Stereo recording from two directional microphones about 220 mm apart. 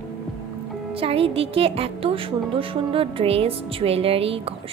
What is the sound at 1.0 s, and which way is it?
A woman's voice, 25° right (ahead or behind).